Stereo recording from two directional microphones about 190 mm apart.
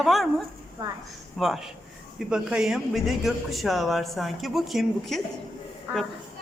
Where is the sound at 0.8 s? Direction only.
20° right (ahead or behind).